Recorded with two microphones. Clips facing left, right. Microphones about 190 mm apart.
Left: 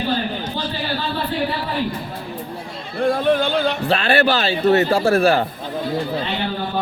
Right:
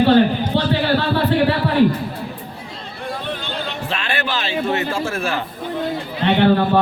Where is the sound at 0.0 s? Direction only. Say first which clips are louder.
Right 9 dB; 70° right (ahead or behind).